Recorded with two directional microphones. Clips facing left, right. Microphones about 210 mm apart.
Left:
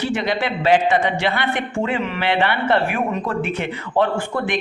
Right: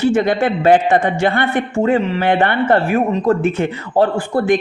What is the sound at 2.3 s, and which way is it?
Speech, 50° right (ahead or behind).